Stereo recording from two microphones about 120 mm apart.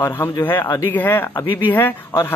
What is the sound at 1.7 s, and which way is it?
Speech, 15° left (ahead or behind).